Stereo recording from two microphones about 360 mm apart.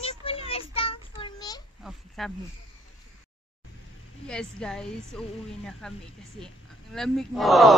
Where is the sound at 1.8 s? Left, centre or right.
Centre.